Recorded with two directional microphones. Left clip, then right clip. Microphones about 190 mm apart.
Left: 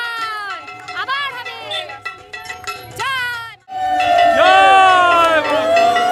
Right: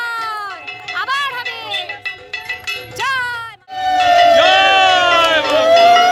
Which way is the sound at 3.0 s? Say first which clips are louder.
Right 1 dB; 10° right (ahead or behind).